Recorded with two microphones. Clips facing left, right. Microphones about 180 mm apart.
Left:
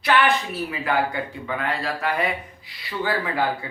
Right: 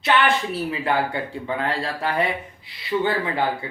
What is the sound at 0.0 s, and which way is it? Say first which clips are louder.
Speech: even; 25° right (ahead or behind).